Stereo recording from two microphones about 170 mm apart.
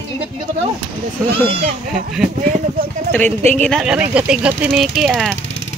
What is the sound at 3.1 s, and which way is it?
Speech, 10° left (ahead or behind).